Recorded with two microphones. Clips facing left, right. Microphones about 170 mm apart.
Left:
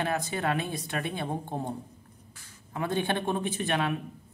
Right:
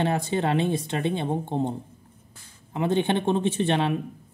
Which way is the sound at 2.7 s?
20° right (ahead or behind).